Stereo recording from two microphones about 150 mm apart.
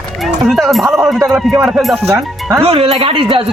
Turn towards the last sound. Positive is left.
turn(degrees=-35)  # may be behind; listen again after turning